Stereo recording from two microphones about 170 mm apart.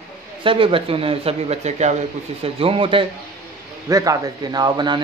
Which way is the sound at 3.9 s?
20° right (ahead or behind).